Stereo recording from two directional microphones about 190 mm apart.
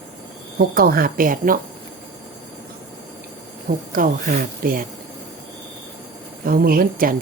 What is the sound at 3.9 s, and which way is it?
Speech, 45° right (ahead or behind).